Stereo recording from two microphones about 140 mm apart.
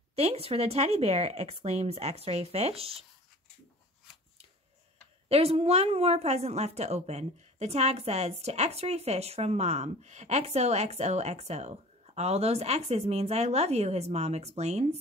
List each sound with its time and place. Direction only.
0.1 s a woman's voice: 50° right (ahead or behind)
5.3 s a woman's voice: 45° right (ahead or behind)